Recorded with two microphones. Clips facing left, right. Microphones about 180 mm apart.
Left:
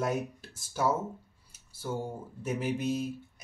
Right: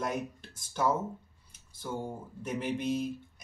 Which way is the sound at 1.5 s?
5° left (ahead or behind).